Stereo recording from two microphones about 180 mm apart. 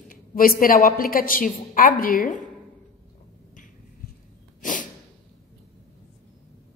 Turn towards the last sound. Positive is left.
turn(degrees=45)  # may be behind; listen again after turning